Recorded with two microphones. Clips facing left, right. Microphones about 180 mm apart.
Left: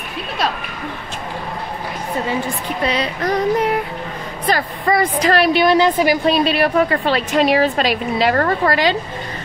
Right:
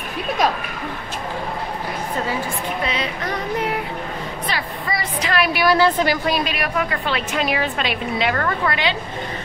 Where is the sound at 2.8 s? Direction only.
35° left (ahead or behind).